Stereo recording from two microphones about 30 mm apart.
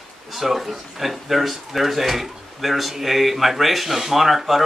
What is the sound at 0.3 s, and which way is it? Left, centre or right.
Speech, centre.